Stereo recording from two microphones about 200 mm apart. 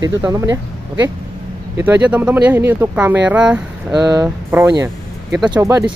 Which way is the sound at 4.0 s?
20° right (ahead or behind).